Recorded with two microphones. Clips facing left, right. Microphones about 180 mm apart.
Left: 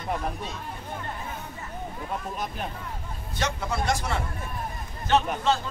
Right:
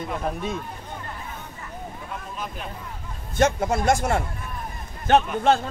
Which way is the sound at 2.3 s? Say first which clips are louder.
Left 1 dB; 40° left (ahead or behind).